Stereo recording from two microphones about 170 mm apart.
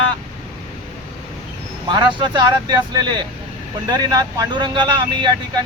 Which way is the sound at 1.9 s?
25° right (ahead or behind).